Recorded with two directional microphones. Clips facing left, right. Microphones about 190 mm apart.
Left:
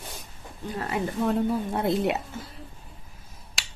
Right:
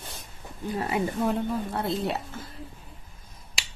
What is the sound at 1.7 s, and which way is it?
Speech, 20° left (ahead or behind).